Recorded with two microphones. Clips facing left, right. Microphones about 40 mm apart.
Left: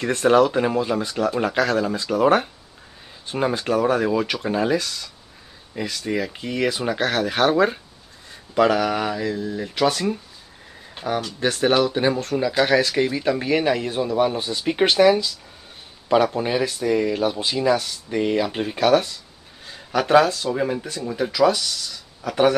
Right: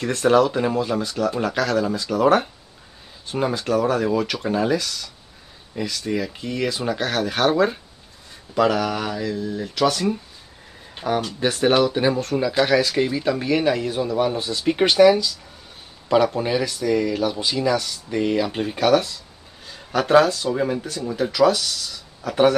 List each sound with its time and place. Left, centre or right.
0.0 s speech: left
8.5 s speech: left
11.1 s speech: centre